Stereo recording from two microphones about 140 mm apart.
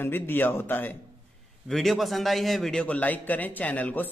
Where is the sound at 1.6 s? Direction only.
Centre (ahead or behind).